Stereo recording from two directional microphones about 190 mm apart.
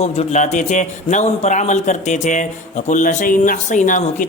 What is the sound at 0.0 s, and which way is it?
A man's voice, 35° left (ahead or behind).